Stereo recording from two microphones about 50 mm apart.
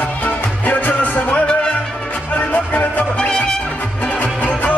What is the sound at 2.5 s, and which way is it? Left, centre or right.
Music, left.